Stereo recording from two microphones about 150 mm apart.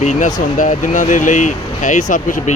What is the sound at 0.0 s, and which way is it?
Speech, 55° left (ahead or behind).